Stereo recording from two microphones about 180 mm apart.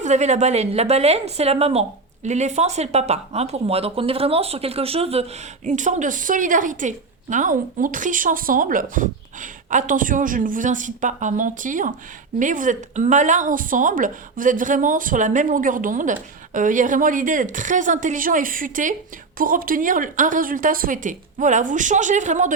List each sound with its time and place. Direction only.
0.0 s a woman's voice: 40° right (ahead or behind)